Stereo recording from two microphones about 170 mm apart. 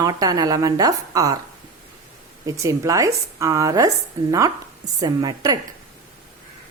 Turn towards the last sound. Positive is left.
turn(degrees=-20)  # may be behind; listen again after turning